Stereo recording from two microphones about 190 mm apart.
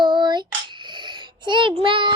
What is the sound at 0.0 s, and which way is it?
Child singing, 25° right (ahead or behind).